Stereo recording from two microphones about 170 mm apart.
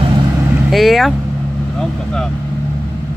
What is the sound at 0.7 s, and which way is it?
Speech, centre (ahead or behind).